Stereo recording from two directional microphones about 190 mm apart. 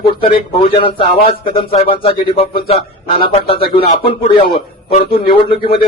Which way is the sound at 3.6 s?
55° left (ahead or behind).